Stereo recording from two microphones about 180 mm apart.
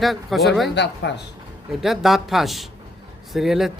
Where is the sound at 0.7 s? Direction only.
70° left (ahead or behind).